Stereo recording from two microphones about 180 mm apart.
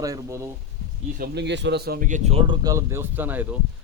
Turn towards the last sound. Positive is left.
turn(degrees=-10)  # may be behind; listen again after turning